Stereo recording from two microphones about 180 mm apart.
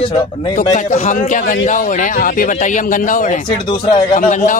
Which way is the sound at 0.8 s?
45° left (ahead or behind).